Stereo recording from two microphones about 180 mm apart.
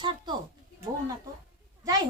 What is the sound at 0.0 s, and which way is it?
Speech, 25° right (ahead or behind).